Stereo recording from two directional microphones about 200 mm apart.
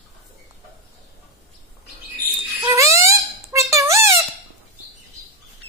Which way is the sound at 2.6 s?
15° right (ahead or behind).